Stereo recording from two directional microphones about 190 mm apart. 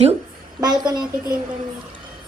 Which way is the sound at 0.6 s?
20° right (ahead or behind).